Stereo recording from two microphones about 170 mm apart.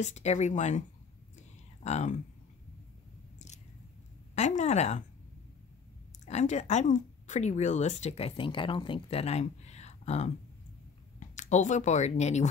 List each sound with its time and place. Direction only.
0.0 s speech: 45° left (ahead or behind)
4.4 s speech: 45° left (ahead or behind)
6.2 s speech: 45° left (ahead or behind)